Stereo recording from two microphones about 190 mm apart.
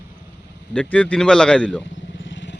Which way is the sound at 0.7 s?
5° left (ahead or behind).